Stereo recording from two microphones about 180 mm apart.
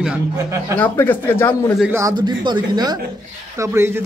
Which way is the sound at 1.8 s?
15° right (ahead or behind).